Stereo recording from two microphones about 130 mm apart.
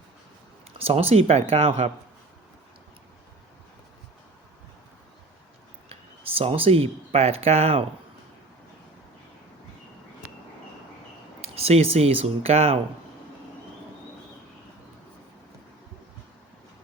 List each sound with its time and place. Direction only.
0.9 s speech: 50° right (ahead or behind)
5.9 s speech: 50° right (ahead or behind)
11.3 s speech: 50° right (ahead or behind)